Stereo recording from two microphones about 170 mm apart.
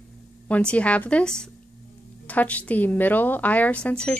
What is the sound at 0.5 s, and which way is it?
A woman's voice, 5° left (ahead or behind).